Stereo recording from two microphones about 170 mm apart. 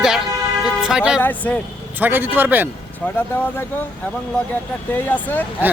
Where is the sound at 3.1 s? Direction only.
10° left (ahead or behind).